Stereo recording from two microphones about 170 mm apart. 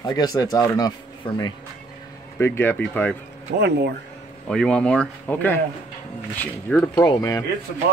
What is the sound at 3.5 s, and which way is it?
Speech, 90° right.